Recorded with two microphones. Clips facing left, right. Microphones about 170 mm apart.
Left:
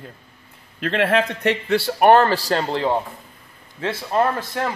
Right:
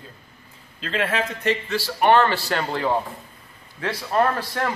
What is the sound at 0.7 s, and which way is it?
A man's voice, 65° left (ahead or behind).